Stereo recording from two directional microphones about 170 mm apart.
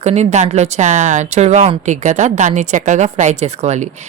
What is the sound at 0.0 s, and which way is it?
Speech, 40° right (ahead or behind).